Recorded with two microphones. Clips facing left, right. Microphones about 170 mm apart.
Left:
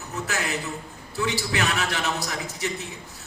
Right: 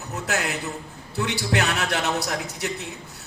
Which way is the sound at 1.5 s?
60° right (ahead or behind).